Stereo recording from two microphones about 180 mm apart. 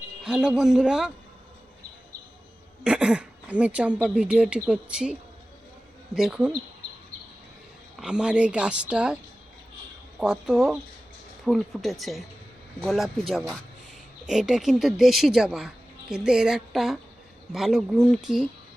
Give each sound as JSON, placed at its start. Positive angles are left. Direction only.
{"t": 0.3, "sound": "a woman's voice", "side_deg": -5}
{"t": 2.8, "sound": "a woman's voice", "side_deg": -5}
{"t": 6.1, "sound": "a woman's voice", "side_deg": -5}
{"t": 7.9, "sound": "a woman's voice", "side_deg": -5}
{"t": 10.2, "sound": "a woman's voice", "side_deg": -5}